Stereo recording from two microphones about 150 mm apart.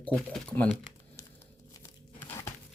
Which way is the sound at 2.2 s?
15° left (ahead or behind).